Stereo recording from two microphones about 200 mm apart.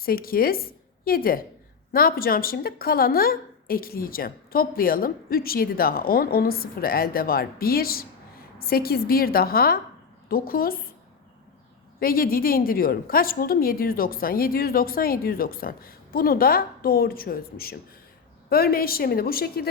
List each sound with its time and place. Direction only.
0.0 s a woman's voice: 45° left (ahead or behind)
11.9 s a woman's voice: 45° left (ahead or behind)